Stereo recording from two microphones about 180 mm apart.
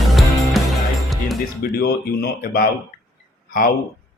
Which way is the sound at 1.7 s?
55° left (ahead or behind).